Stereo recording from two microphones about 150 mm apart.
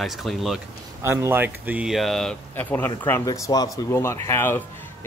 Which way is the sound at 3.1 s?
25° left (ahead or behind).